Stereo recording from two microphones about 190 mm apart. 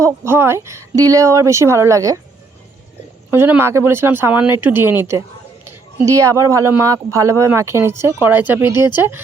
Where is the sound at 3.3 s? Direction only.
10° right (ahead or behind).